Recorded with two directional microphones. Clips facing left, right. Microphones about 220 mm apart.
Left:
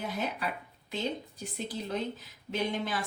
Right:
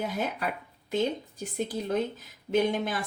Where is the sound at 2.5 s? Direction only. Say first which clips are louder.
Right 6 dB; 50° right (ahead or behind).